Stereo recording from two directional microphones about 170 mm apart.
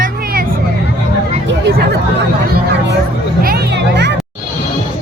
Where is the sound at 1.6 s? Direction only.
70° right (ahead or behind).